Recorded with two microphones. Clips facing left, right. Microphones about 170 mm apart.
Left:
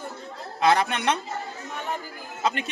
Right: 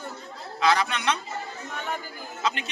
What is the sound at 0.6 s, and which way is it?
Speech, 55° left (ahead or behind).